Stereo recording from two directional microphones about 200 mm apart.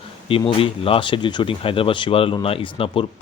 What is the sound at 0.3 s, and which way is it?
Speech, 25° left (ahead or behind).